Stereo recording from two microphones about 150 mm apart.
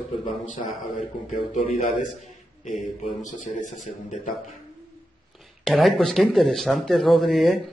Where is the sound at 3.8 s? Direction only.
55° left (ahead or behind).